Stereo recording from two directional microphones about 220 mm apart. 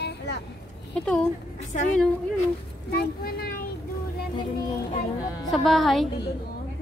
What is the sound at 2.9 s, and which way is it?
Speech, 45° left (ahead or behind).